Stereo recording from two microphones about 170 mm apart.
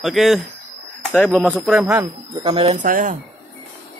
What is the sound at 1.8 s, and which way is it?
Speech, 15° right (ahead or behind).